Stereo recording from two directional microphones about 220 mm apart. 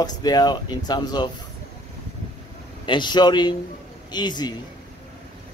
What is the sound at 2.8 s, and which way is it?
Speech, 20° left (ahead or behind).